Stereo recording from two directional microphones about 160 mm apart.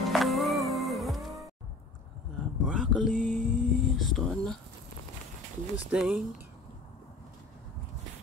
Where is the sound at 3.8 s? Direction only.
Centre (ahead or behind).